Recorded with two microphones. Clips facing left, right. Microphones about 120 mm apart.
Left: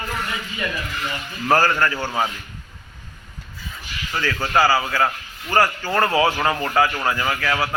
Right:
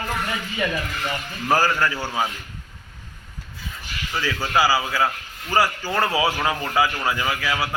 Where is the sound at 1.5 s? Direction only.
10° right (ahead or behind).